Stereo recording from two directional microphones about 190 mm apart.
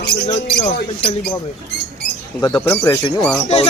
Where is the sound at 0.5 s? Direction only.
25° left (ahead or behind).